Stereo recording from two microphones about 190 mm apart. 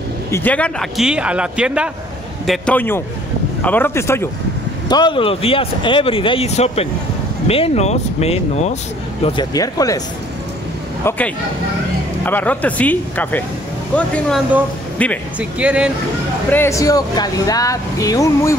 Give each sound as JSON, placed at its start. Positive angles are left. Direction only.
{"t": 0.3, "sound": "speech", "side_deg": 10}
{"t": 9.2, "sound": "speech", "side_deg": 20}
{"t": 11.1, "sound": "speech", "side_deg": 10}
{"t": 15.3, "sound": "speech", "side_deg": -5}
{"t": 16.4, "sound": "speech", "side_deg": 10}